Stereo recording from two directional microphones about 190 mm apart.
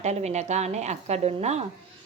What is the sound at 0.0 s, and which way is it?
A woman's voice, 35° right (ahead or behind).